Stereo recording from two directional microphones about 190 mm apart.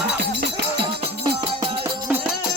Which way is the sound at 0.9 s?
30° right (ahead or behind).